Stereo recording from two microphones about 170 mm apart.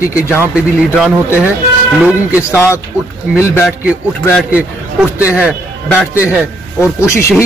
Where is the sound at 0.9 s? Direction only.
10° right (ahead or behind).